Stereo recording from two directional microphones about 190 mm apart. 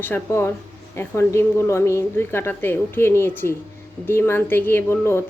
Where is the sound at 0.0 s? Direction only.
10° left (ahead or behind).